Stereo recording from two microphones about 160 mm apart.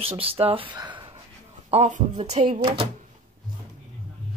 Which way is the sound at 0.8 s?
30° right (ahead or behind).